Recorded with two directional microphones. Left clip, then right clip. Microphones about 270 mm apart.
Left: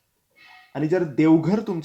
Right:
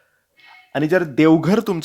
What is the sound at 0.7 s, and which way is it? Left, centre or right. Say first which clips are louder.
Speech: right 5 dB; right.